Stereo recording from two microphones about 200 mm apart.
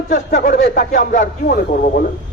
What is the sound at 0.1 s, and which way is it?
Speech, 40° left (ahead or behind).